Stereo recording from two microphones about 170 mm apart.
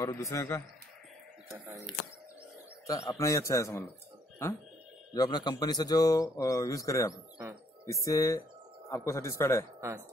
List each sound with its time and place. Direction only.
0.0 s a man's voice: 15° left (ahead or behind)
3.2 s a man's voice: 15° left (ahead or behind)
5.1 s a man's voice: 25° left (ahead or behind)
9.8 s speech: 15° right (ahead or behind)